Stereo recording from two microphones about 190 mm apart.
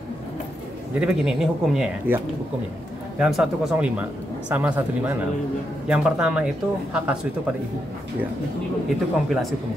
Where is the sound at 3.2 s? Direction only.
5° right (ahead or behind).